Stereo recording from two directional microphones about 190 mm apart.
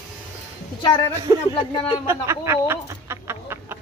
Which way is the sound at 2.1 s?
15° right (ahead or behind).